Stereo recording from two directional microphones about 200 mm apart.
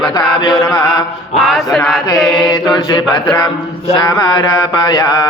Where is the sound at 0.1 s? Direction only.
20° left (ahead or behind).